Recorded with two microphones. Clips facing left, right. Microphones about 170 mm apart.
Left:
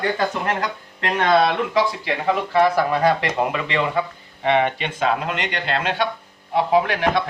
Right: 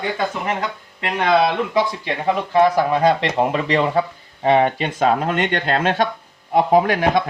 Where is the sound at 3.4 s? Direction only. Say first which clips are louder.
Right 4 dB; 35° right (ahead or behind).